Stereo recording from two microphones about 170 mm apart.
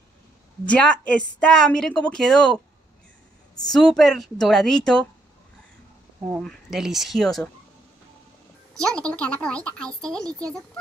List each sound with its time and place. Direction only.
0.7 s a woman's voice: 5° left (ahead or behind)
3.7 s a woman's voice: 5° left (ahead or behind)
6.4 s a woman's voice: centre (ahead or behind)
8.7 s a woman's voice: 5° left (ahead or behind)